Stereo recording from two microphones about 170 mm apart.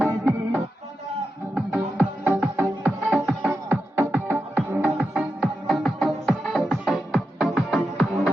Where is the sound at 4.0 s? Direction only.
15° right (ahead or behind).